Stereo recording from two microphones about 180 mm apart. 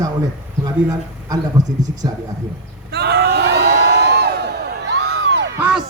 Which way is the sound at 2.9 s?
65° right (ahead or behind).